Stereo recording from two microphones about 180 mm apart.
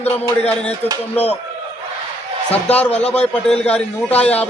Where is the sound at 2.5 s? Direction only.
10° left (ahead or behind).